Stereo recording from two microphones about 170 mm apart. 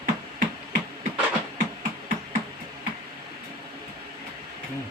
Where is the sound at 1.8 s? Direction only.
50° right (ahead or behind).